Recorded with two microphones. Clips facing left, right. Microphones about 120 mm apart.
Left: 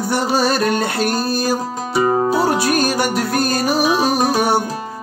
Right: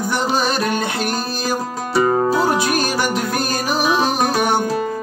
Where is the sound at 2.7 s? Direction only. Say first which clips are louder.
Left 2 dB; 50° left (ahead or behind).